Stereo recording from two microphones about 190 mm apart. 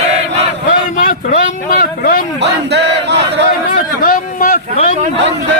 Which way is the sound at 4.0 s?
45° left (ahead or behind).